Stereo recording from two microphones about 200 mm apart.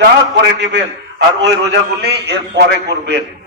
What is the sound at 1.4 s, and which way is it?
A man's voice, 60° right (ahead or behind).